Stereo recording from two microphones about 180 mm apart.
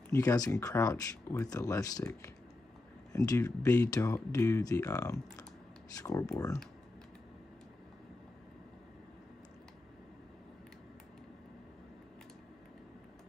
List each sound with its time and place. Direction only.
0.1 s speech: 20° left (ahead or behind)